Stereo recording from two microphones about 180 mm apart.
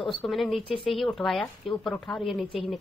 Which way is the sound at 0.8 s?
Centre (ahead or behind).